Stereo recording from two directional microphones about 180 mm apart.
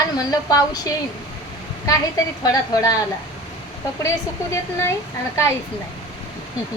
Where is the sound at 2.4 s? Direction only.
20° left (ahead or behind).